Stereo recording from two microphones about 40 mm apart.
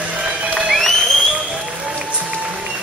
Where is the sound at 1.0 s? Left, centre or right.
Centre.